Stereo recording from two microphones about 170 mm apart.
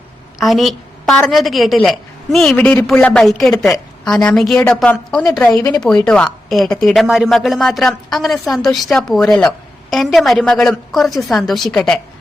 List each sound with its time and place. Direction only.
0.3 s a woman's voice: centre (ahead or behind)
5.5 s speech: 20° left (ahead or behind)
5.8 s a woman's voice: 5° left (ahead or behind)